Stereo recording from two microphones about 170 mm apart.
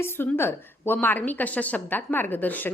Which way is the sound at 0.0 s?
15° left (ahead or behind).